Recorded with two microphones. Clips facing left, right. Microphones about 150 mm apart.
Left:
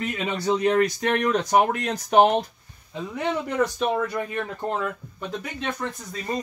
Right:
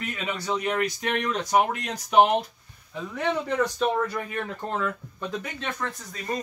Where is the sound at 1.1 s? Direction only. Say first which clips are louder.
Left 2 dB; 50° left (ahead or behind).